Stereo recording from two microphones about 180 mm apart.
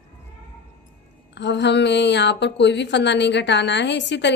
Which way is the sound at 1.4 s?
75° left (ahead or behind).